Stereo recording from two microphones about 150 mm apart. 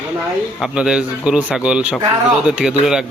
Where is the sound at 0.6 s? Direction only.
5° right (ahead or behind).